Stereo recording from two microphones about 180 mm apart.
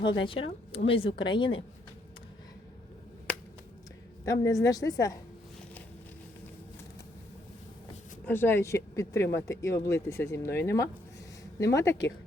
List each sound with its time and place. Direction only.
0.0 s a woman's voice: 25° left (ahead or behind)
4.3 s a woman's voice: 20° left (ahead or behind)
8.2 s speech: 10° left (ahead or behind)